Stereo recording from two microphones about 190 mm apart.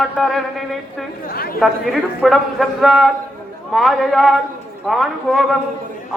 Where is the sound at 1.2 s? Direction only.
50° left (ahead or behind).